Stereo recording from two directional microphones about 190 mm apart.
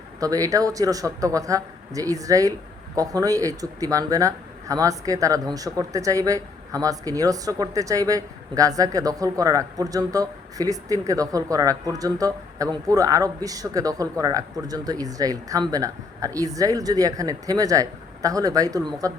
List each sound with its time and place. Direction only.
0.2 s speech: 20° right (ahead or behind)